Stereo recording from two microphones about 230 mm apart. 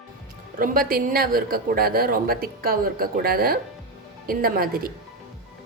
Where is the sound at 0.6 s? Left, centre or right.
Right.